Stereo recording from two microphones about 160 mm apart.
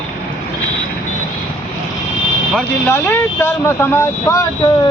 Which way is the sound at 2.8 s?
15° left (ahead or behind).